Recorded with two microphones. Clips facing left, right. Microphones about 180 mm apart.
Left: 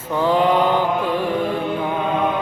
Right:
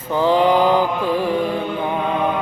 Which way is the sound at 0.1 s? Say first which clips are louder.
Right 2 dB; centre (ahead or behind).